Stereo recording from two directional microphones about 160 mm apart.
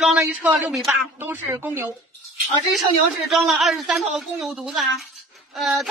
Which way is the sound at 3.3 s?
Centre (ahead or behind).